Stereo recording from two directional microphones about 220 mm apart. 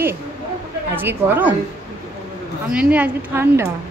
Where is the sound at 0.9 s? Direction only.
10° right (ahead or behind).